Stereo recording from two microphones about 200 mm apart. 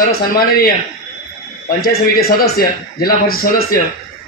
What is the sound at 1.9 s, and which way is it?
A man's voice, 50° left (ahead or behind).